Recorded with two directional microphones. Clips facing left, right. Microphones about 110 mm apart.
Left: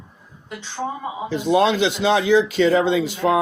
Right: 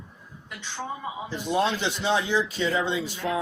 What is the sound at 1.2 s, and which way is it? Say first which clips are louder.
Speech: left 8 dB; 90° left.